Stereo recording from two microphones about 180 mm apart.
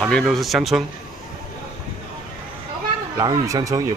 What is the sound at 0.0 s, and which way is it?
Speech, centre (ahead or behind).